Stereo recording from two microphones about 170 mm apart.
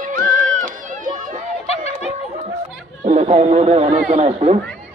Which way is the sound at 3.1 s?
40° right (ahead or behind).